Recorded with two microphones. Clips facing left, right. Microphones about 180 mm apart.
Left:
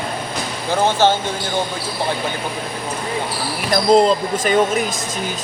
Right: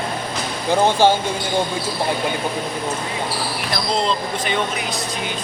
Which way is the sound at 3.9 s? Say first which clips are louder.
Left 9 dB; 45° left (ahead or behind).